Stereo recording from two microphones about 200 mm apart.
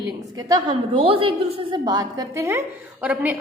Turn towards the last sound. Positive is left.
turn(degrees=-5)  # may be behind; listen again after turning